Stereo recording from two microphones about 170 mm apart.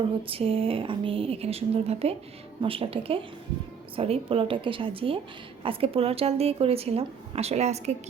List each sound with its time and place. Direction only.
0.2 s a woman's voice: 35° right (ahead or behind)